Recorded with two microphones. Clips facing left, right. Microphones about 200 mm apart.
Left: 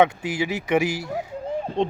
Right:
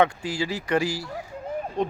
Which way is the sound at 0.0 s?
20° left (ahead or behind).